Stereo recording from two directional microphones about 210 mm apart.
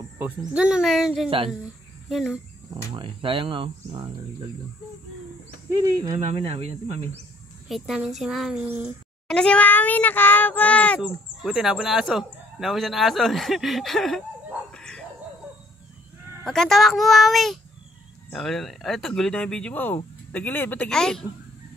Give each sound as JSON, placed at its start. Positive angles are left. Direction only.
{"t": 0.2, "sound": "speech", "side_deg": -5}
{"t": 2.9, "sound": "speech", "side_deg": -25}
{"t": 6.2, "sound": "speech", "side_deg": -30}
{"t": 7.6, "sound": "speech", "side_deg": 0}
{"t": 9.3, "sound": "speech", "side_deg": 5}
{"t": 14.7, "sound": "dog", "side_deg": 5}
{"t": 16.4, "sound": "speech", "side_deg": 0}